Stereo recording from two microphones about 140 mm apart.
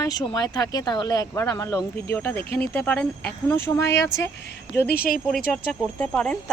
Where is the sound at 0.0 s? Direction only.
25° left (ahead or behind).